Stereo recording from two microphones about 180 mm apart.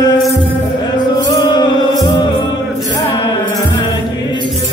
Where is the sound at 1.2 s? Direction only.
25° left (ahead or behind).